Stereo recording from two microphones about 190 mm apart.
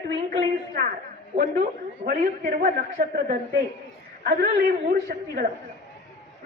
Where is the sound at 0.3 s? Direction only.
50° right (ahead or behind).